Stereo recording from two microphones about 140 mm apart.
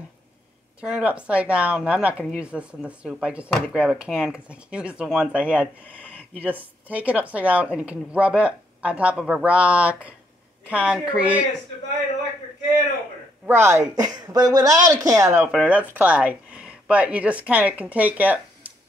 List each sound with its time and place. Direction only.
0.7 s a woman's voice: 5° right (ahead or behind)
13.5 s speech: 20° right (ahead or behind)
15.4 s speech: 5° right (ahead or behind)